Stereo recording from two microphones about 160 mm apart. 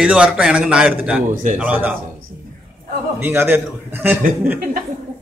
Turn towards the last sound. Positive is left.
turn(degrees=-10)  # may be behind; listen again after turning